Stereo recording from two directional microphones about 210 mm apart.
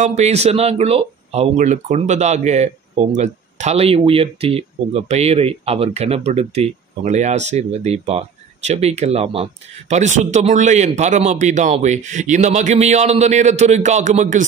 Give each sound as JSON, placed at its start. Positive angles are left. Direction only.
{"t": 0.0, "sound": "speech", "side_deg": -35}